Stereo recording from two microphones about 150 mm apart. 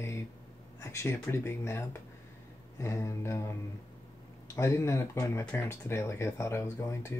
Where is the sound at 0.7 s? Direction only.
20° left (ahead or behind).